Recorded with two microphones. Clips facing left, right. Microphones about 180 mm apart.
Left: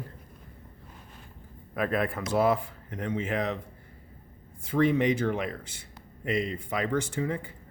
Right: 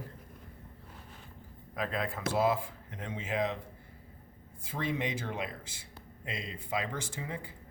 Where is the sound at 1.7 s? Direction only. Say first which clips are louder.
Left 7 dB; 60° left (ahead or behind).